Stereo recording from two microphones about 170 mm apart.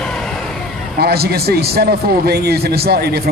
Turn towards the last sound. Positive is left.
turn(degrees=-70)  # may be behind; listen again after turning